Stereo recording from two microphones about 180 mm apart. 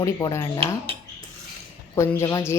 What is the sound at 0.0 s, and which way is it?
Speech, 15° left (ahead or behind).